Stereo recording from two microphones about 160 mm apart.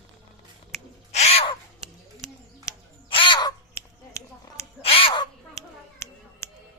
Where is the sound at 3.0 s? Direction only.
30° left (ahead or behind).